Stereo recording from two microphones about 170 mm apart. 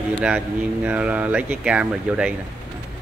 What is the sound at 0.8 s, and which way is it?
Speech, 10° right (ahead or behind).